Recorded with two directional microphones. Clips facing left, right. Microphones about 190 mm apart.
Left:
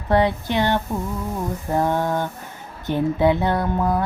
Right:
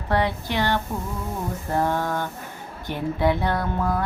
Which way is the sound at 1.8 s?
15° left (ahead or behind).